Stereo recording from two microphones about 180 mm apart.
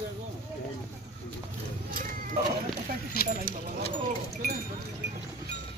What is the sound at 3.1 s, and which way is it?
Speech, 55° left (ahead or behind).